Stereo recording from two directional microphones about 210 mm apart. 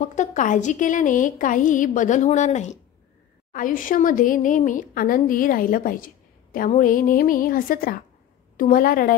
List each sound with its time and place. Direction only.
0.0 s speech: 35° left (ahead or behind)